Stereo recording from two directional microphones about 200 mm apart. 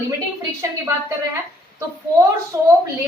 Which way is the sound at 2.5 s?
15° right (ahead or behind).